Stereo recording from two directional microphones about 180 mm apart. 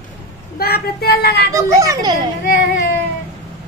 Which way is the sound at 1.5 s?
20° right (ahead or behind).